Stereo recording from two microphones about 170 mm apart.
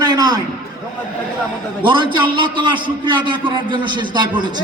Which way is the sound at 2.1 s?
30° right (ahead or behind).